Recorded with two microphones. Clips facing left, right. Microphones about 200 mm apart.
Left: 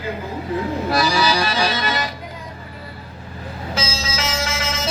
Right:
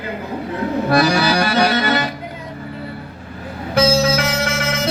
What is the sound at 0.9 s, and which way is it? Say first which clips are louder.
Accordion: right 4 dB; 60° right (ahead or behind).